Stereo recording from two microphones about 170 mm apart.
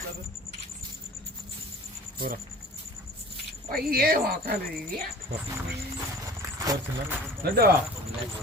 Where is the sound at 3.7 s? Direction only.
60° right (ahead or behind).